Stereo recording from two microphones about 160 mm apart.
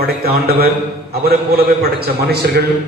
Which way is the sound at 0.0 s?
75° right (ahead or behind).